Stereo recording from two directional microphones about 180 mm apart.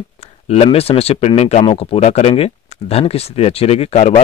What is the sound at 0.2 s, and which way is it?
Speech, 35° left (ahead or behind).